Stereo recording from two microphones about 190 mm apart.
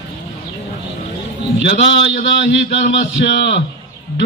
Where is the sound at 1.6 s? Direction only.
65° left (ahead or behind).